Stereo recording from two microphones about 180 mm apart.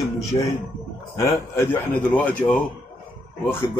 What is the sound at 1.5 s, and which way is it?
Speech, 10° left (ahead or behind).